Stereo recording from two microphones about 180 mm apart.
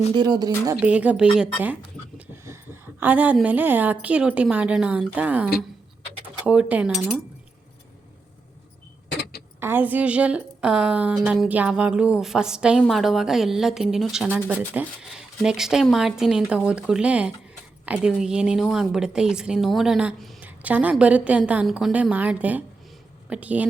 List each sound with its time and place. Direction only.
0.1 s speech: 25° right (ahead or behind)
0.8 s a woman's voice: 5° right (ahead or behind)
9.6 s a woman's voice: 10° right (ahead or behind)